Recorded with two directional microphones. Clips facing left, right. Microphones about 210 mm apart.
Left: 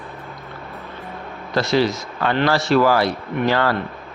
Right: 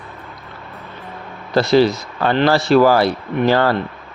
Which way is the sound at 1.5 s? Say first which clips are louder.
Right 5 dB; 35° right (ahead or behind).